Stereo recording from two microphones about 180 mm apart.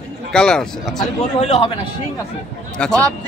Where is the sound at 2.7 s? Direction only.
5° left (ahead or behind).